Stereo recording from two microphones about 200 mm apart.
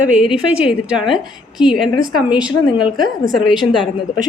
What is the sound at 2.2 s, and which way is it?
Speech, 5° right (ahead or behind).